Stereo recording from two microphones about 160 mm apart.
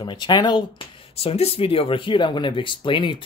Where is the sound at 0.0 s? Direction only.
30° left (ahead or behind).